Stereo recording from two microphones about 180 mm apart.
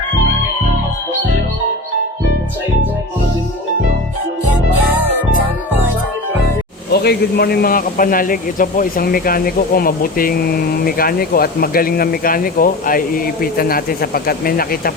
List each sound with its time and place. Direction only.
6.9 s a man's voice: 60° left (ahead or behind)